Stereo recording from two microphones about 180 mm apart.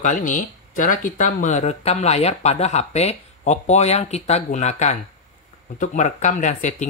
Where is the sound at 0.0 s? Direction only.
45° left (ahead or behind).